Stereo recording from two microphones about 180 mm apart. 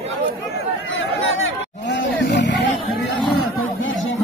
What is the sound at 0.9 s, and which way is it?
Chatter, 85° left.